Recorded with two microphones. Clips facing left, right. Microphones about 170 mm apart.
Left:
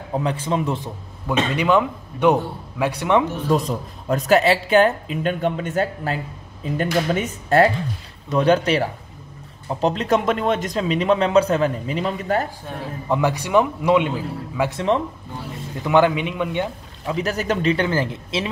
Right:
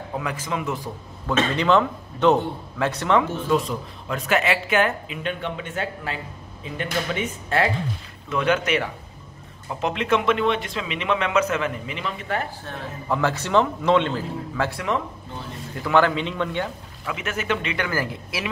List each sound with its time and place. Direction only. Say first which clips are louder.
0.2 s speech: left 6 dB; 30° left (ahead or behind)
1.2 s a man's voice: left 1 dB; 15° left (ahead or behind)
3.4 s speech: left 2 dB; 40° left (ahead or behind)
12.6 s a man's voice: left 3 dB; 15° left (ahead or behind)
15.8 s a man's voice: left 3 dB; 15° left (ahead or behind)
17.0 s speech: left 6 dB; 35° left (ahead or behind)